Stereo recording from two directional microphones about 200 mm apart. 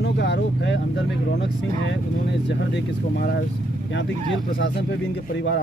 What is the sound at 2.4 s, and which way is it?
Speech, 60° left (ahead or behind).